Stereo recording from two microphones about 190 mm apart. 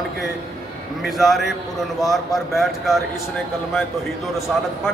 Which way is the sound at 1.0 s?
Centre (ahead or behind).